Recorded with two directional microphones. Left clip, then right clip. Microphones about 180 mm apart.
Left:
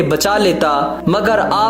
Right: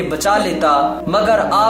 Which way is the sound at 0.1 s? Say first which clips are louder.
Right 2 dB; 35° left (ahead or behind).